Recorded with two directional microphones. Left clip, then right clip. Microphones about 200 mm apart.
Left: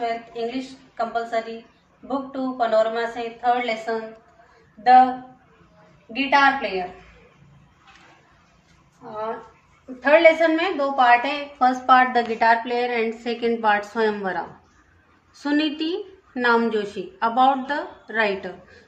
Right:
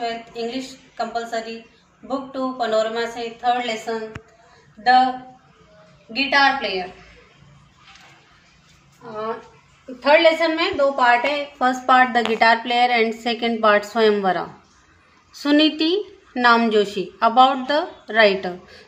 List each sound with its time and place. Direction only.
0.0 s a woman's voice: 5° left (ahead or behind)
6.1 s a woman's voice: centre (ahead or behind)
9.9 s a woman's voice: 15° right (ahead or behind)
11.0 s a woman's voice: 45° right (ahead or behind)